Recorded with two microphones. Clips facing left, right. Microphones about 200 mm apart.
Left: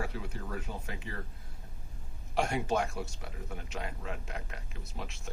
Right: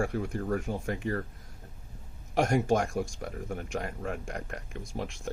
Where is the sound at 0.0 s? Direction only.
50° right (ahead or behind).